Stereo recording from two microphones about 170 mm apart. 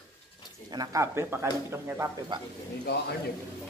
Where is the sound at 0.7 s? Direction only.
20° right (ahead or behind).